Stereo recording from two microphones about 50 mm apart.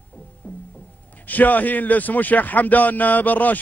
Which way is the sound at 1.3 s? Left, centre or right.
Left.